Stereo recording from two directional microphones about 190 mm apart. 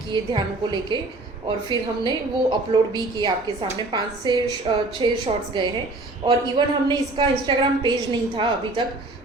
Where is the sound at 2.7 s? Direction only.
25° right (ahead or behind).